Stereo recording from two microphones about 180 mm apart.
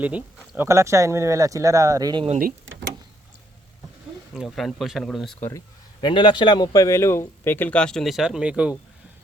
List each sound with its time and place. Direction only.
0.0 s speech: 10° right (ahead or behind)
4.4 s speech: centre (ahead or behind)
5.5 s speech: 20° left (ahead or behind); by 8.8 s 5° right (ahead or behind)